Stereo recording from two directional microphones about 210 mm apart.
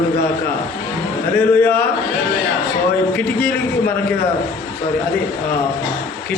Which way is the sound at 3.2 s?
10° left (ahead or behind).